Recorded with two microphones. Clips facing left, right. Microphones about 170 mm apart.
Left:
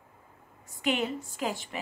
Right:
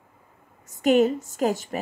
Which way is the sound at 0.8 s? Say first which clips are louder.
Right 11 dB; 45° right (ahead or behind).